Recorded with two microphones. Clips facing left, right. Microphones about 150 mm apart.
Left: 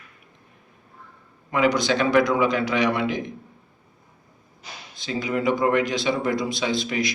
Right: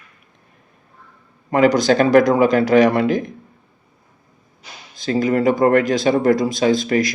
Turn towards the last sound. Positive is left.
turn(degrees=-45)  # may be behind; listen again after turning